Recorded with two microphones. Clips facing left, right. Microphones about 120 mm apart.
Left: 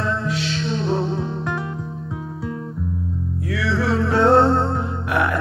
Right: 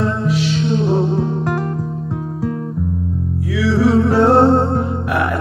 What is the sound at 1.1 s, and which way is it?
Music, 55° right (ahead or behind).